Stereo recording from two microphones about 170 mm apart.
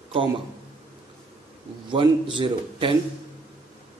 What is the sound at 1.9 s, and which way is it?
A man's voice, 30° right (ahead or behind).